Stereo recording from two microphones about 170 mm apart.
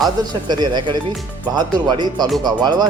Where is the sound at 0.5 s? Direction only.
25° right (ahead or behind).